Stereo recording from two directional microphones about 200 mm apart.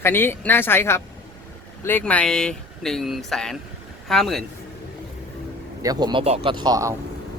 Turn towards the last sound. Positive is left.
turn(degrees=-15)  # may be behind; listen again after turning